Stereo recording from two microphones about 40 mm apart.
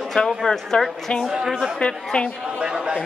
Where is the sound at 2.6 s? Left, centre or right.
Right.